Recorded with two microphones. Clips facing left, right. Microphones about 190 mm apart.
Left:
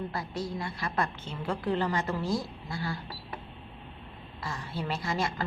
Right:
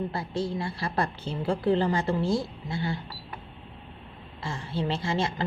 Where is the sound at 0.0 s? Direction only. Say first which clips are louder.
Right 4 dB; 30° right (ahead or behind).